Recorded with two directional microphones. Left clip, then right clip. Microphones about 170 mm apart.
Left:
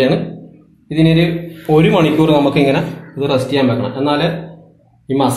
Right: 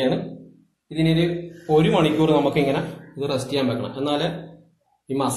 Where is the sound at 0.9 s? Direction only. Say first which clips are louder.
Left 8 dB; 30° left (ahead or behind).